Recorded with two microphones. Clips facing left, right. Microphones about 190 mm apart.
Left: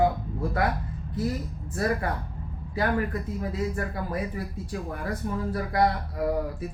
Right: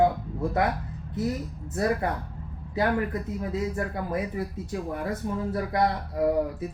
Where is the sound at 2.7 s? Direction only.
20° right (ahead or behind).